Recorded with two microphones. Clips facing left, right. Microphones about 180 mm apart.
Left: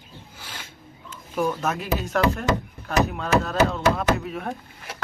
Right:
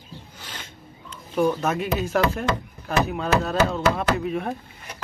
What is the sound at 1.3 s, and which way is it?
Speech, centre (ahead or behind).